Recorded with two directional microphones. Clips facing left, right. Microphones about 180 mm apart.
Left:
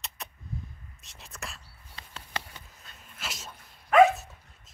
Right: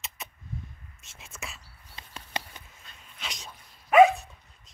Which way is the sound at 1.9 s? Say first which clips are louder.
Right 1 dB; 15° right (ahead or behind).